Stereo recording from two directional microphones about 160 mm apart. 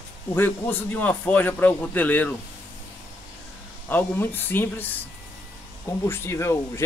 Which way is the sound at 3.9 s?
10° left (ahead or behind).